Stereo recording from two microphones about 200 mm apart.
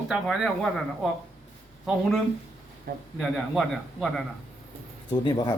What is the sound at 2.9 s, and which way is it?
Speech, 50° right (ahead or behind).